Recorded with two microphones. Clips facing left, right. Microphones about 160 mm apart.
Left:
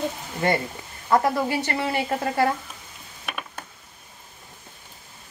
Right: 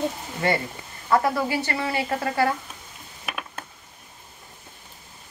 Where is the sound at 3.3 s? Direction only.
Centre (ahead or behind).